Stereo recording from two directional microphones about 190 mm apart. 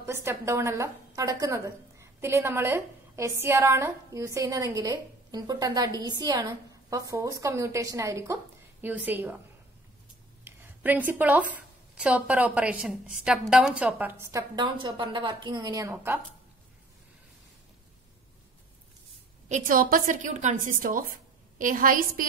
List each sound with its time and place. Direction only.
0.0 s a woman's voice: 15° right (ahead or behind)
10.4 s a woman's voice: 10° right (ahead or behind)
19.5 s a woman's voice: 45° right (ahead or behind)